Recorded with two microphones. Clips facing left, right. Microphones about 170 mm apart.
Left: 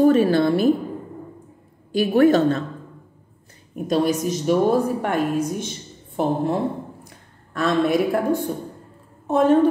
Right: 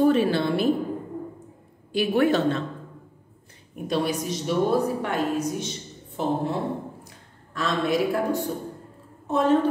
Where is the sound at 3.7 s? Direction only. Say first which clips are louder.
Left 5 dB; 45° left (ahead or behind).